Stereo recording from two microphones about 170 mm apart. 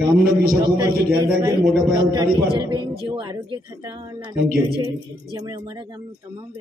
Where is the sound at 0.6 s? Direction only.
20° right (ahead or behind).